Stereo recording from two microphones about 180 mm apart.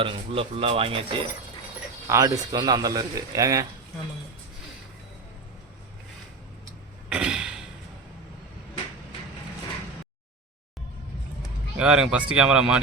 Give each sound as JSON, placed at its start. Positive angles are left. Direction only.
{"t": 0.0, "sound": "speech", "side_deg": -30}
{"t": 2.0, "sound": "a man's voice", "side_deg": -15}
{"t": 7.1, "sound": "a sound", "side_deg": -5}
{"t": 11.8, "sound": "speech", "side_deg": -5}